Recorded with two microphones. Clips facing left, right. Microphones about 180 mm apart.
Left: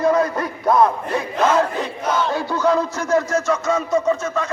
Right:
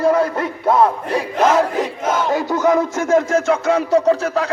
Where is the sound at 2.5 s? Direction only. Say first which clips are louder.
Right 2 dB; 45° right (ahead or behind); by 4.5 s 65° right (ahead or behind).